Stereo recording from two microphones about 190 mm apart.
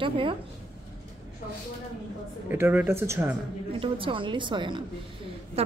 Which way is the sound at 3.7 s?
25° right (ahead or behind).